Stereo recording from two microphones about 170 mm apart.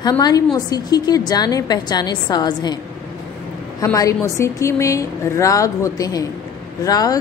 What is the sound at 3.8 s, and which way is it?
A woman's voice, 20° left (ahead or behind).